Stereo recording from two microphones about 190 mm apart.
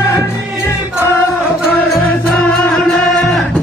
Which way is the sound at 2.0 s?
5° left (ahead or behind).